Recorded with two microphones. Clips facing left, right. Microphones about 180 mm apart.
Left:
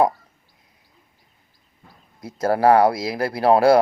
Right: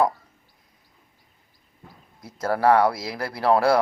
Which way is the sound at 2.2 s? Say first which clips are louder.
Left 4 dB; 25° left (ahead or behind).